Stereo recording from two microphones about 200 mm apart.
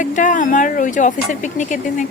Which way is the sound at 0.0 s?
40° left (ahead or behind).